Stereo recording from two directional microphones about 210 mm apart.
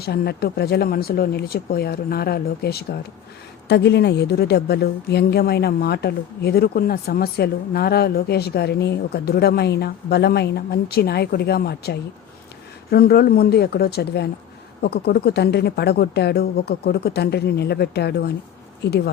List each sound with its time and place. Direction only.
0.0 s a woman's voice: 50° left (ahead or behind)